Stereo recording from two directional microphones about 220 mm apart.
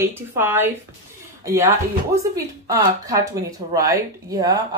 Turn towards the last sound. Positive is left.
turn(degrees=-15)  # may be behind; listen again after turning